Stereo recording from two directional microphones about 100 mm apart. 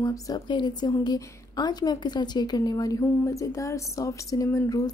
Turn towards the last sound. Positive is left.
turn(degrees=35)  # may be behind; listen again after turning